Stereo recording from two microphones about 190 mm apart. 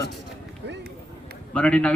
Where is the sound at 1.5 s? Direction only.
5° left (ahead or behind).